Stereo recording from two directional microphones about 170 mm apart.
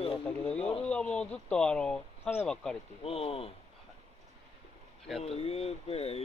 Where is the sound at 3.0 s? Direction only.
35° left (ahead or behind).